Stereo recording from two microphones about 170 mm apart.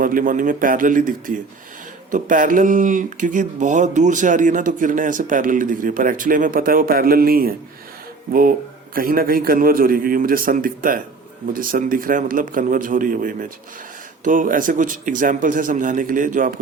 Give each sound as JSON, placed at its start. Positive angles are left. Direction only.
{"t": 0.0, "sound": "a man's voice", "side_deg": -55}